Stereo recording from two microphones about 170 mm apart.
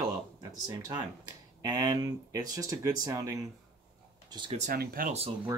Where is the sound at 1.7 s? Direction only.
20° right (ahead or behind).